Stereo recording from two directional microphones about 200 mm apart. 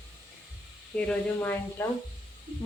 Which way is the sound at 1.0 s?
5° left (ahead or behind).